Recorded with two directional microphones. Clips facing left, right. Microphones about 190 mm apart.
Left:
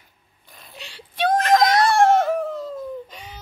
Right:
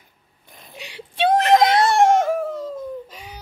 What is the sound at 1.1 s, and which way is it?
Screaming, 25° right (ahead or behind).